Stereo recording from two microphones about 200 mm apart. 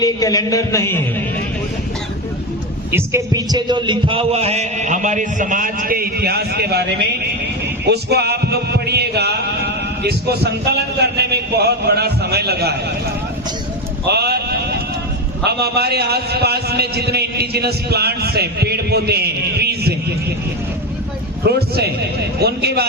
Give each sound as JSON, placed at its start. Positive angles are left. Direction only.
{"t": 0.0, "sound": "a man's voice", "side_deg": 20}
{"t": 2.9, "sound": "a man's voice", "side_deg": -15}
{"t": 7.9, "sound": "music", "side_deg": -55}
{"t": 14.1, "sound": "sheep", "side_deg": -55}
{"t": 15.4, "sound": "a man's voice", "side_deg": -55}
{"t": 21.4, "sound": "a man's voice", "side_deg": -55}